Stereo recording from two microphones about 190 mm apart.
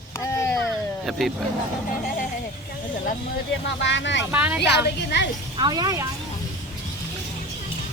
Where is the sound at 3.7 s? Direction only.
70° left (ahead or behind).